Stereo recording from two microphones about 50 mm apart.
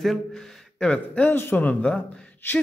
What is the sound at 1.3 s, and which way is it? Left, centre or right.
Speech, left.